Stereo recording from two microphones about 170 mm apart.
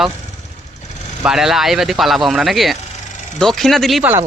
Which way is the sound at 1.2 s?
5° right (ahead or behind).